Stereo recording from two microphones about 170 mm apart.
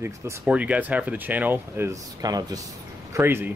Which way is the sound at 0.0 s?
10° right (ahead or behind).